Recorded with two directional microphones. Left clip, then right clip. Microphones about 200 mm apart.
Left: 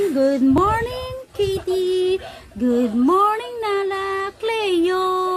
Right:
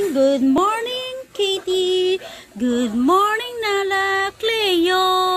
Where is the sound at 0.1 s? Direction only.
10° left (ahead or behind).